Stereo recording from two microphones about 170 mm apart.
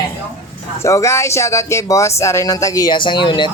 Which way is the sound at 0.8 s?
15° left (ahead or behind).